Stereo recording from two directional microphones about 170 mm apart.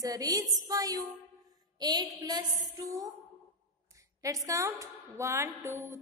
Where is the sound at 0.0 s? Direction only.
20° right (ahead or behind).